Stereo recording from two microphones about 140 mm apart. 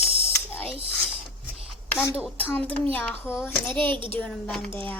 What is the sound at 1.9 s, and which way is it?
A child's voice, 15° left (ahead or behind).